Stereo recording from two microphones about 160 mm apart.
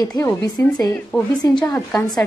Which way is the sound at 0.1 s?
20° left (ahead or behind).